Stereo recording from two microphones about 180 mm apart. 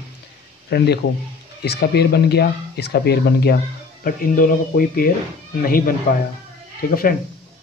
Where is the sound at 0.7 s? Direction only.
65° left (ahead or behind).